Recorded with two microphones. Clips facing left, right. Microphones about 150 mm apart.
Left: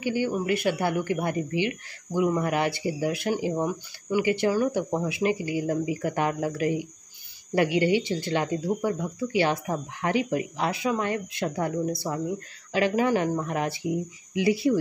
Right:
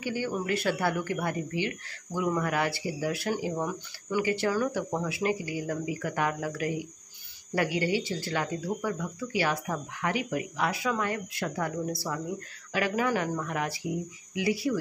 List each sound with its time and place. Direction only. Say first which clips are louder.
0.0 s speech: left 5 dB; 20° left (ahead or behind)